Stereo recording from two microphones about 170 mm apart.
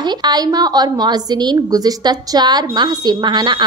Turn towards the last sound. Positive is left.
turn(degrees=-25)  # may be behind; listen again after turning